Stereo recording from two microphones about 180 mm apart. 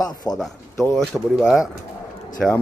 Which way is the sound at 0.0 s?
20° left (ahead or behind).